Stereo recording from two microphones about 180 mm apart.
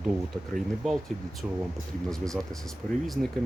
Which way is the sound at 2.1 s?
Centre (ahead or behind).